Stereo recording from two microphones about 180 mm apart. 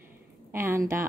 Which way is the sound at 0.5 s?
15° right (ahead or behind).